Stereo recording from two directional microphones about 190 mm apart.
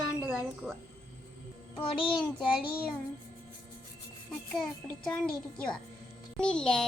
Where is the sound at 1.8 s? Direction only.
25° left (ahead or behind).